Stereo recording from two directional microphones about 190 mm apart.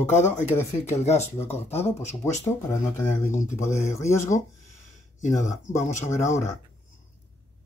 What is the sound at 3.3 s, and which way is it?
Speech, 40° left (ahead or behind).